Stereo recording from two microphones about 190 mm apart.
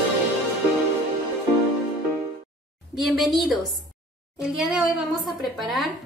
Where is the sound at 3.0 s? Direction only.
Centre (ahead or behind).